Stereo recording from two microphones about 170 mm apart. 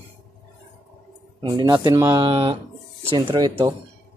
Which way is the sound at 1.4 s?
25° right (ahead or behind).